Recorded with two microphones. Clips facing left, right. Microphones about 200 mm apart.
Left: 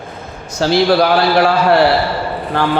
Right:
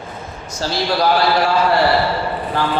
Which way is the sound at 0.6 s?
65° left (ahead or behind).